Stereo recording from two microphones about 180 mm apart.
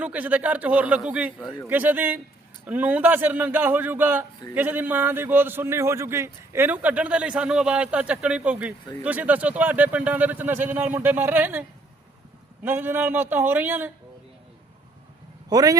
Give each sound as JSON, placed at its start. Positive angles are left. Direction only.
{"t": 0.0, "sound": "a man's voice", "side_deg": -10}
{"t": 12.6, "sound": "a man's voice", "side_deg": -10}
{"t": 15.4, "sound": "speech", "side_deg": -20}